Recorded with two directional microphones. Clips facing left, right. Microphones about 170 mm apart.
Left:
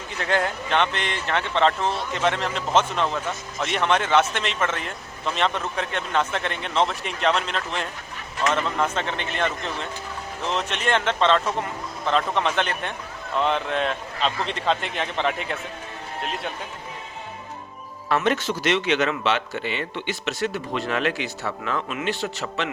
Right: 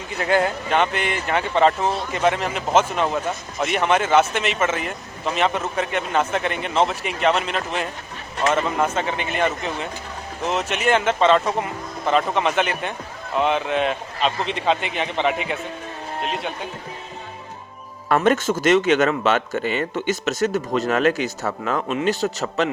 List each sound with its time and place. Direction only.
0.2 s speech: 5° right (ahead or behind)
18.1 s speech: 45° right (ahead or behind)